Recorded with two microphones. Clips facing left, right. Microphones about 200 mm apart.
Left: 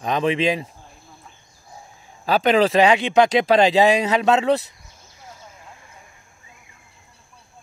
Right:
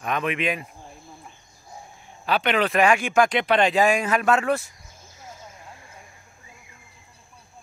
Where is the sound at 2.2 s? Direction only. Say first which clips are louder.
Left 6 dB; 35° left (ahead or behind).